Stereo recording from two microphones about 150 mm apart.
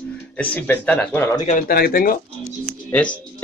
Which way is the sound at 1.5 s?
70° left (ahead or behind).